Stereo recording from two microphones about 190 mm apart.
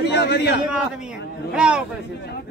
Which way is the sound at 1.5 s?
5° right (ahead or behind).